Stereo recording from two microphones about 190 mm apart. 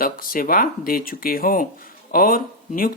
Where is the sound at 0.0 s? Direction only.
50° left (ahead or behind).